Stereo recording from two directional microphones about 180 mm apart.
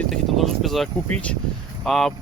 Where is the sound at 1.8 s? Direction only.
Centre (ahead or behind).